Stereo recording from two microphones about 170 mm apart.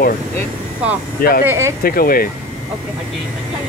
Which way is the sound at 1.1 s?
60° left (ahead or behind).